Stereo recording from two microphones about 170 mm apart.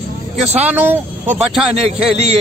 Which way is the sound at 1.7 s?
35° right (ahead or behind).